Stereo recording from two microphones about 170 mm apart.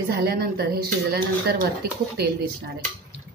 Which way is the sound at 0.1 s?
65° right (ahead or behind).